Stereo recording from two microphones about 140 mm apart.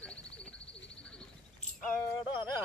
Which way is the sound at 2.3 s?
35° left (ahead or behind).